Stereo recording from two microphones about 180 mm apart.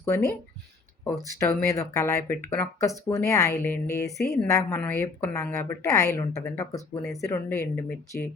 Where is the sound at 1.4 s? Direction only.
15° left (ahead or behind).